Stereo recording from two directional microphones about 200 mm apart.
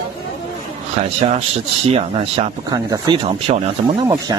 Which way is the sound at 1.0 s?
35° right (ahead or behind).